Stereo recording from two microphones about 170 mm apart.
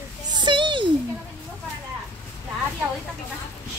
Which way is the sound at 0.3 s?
25° right (ahead or behind).